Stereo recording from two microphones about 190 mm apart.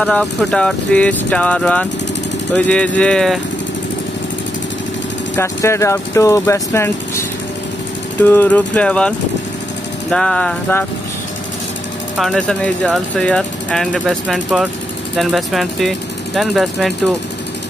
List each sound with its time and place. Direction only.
0.0 s speech: 5° left (ahead or behind)
5.3 s speech: 15° left (ahead or behind)
10.1 s speech: 5° left (ahead or behind)
12.2 s speech: centre (ahead or behind)